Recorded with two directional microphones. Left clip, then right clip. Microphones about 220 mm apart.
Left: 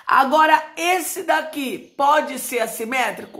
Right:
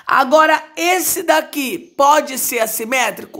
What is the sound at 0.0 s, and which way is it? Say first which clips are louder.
A woman's voice: right 3 dB; 40° right (ahead or behind).